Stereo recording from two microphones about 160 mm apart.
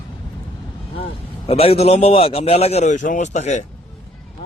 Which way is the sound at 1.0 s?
40° left (ahead or behind).